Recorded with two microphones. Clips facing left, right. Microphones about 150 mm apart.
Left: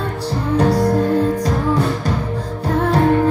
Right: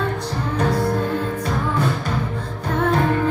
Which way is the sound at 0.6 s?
35° left (ahead or behind).